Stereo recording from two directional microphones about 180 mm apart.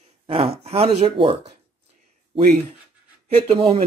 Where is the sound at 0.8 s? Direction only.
30° right (ahead or behind).